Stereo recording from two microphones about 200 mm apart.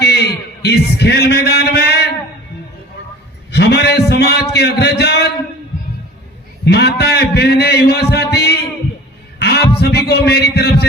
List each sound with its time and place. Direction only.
0.0 s a man's voice: 55° left (ahead or behind)
3.5 s a sound: 55° left (ahead or behind)
4.5 s a man's voice: 55° left (ahead or behind)
6.7 s a man's voice: 55° left (ahead or behind)
9.4 s a sound: 55° left (ahead or behind)
9.8 s a man's voice: 55° left (ahead or behind)